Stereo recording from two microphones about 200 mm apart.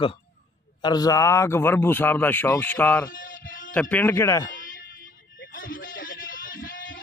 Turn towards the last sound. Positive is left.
turn(degrees=45)  # may be behind; listen again after turning